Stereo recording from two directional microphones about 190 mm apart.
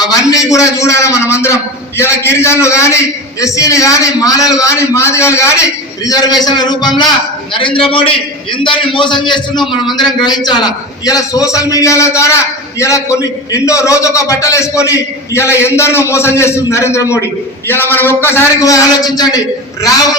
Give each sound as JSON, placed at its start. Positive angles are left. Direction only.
{"t": 0.0, "sound": "a man's voice", "side_deg": 20}